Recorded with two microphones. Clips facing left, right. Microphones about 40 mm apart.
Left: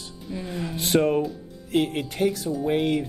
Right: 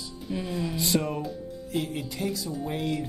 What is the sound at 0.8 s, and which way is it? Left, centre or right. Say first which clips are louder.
Speech: left 9 dB; left.